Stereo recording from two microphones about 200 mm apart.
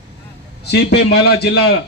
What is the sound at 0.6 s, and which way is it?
A man's voice, 55° left (ahead or behind).